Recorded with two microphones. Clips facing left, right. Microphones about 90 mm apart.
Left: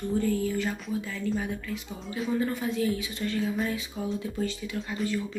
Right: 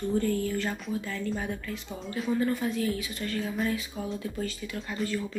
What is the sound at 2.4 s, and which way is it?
Speech, 20° left (ahead or behind).